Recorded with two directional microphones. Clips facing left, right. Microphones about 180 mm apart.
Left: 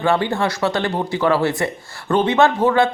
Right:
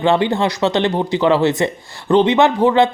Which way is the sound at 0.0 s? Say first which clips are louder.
Right 3 dB; 20° right (ahead or behind).